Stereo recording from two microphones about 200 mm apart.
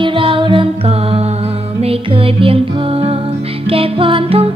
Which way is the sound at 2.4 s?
30° right (ahead or behind).